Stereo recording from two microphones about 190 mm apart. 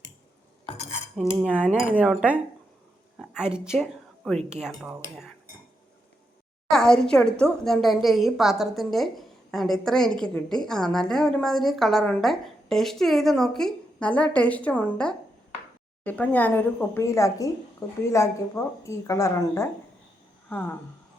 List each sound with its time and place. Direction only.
1.4 s a woman's voice: 5° right (ahead or behind)
6.7 s a woman's voice: 5° left (ahead or behind)